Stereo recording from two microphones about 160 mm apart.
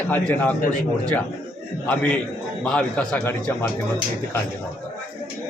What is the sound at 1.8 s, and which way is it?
A man's voice, 10° left (ahead or behind).